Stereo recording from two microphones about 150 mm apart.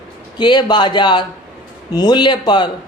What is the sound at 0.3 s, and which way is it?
Speech, 30° left (ahead or behind).